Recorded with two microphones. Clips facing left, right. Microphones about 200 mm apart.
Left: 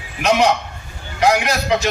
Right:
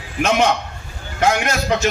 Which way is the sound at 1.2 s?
35° left (ahead or behind).